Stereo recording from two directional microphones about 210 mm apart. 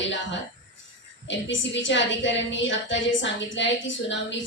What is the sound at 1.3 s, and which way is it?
A woman's voice, 60° left (ahead or behind).